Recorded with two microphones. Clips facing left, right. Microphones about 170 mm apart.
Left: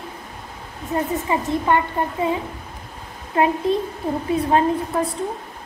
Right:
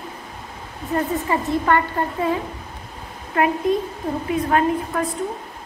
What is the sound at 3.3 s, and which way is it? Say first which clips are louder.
A woman's voice: even; 30° left (ahead or behind).